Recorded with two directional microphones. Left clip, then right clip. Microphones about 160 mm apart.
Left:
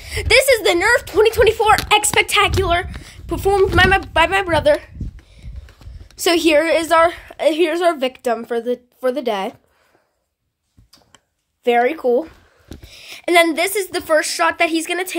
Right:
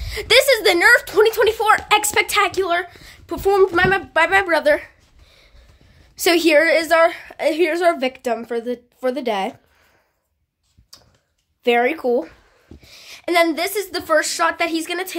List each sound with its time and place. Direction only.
0.0 s a sound: 20° left (ahead or behind)
0.3 s speech: 5° left (ahead or behind)
1.2 s a woman's voice: 15° left (ahead or behind)
3.7 s speech: 20° left (ahead or behind)
4.3 s speech: 5° left (ahead or behind)
6.1 s a woman's voice: centre (ahead or behind)
11.6 s speech: 5° right (ahead or behind)
12.9 s a woman's voice: 20° left (ahead or behind)